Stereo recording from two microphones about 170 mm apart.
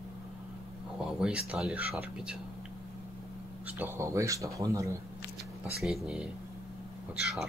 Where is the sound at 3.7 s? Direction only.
10° right (ahead or behind).